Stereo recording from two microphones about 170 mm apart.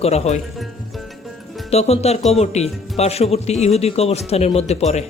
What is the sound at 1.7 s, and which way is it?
Speech, 40° left (ahead or behind).